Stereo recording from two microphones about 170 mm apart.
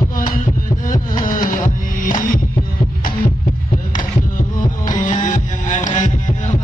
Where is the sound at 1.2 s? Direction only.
50° left (ahead or behind).